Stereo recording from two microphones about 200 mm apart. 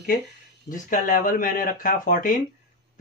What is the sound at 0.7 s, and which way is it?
Speech, 40° left (ahead or behind).